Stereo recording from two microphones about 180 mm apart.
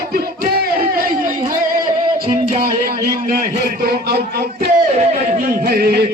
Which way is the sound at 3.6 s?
55° right (ahead or behind).